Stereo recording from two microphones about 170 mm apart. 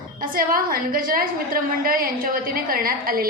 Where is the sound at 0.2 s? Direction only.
55° right (ahead or behind).